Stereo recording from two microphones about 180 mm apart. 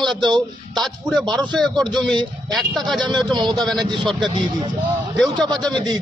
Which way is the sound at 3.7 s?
Centre (ahead or behind).